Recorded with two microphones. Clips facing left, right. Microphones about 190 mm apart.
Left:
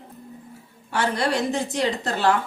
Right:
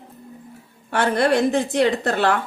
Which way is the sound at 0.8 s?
55° right (ahead or behind).